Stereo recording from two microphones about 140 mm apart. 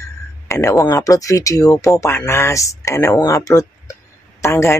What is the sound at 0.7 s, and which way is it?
Speech, 25° left (ahead or behind).